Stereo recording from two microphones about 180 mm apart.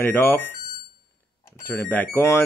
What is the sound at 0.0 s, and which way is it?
Speech, 10° left (ahead or behind).